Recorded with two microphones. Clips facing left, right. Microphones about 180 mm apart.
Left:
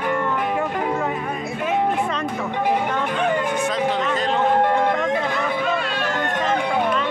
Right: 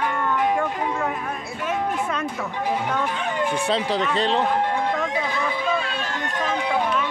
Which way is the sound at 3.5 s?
30° right (ahead or behind).